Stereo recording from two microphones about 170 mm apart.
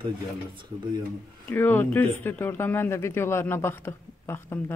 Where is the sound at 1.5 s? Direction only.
15° left (ahead or behind).